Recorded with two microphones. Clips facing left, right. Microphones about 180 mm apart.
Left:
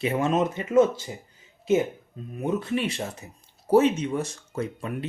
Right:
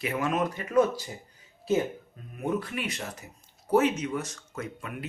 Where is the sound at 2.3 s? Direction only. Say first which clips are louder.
Left 4 dB; 25° left (ahead or behind).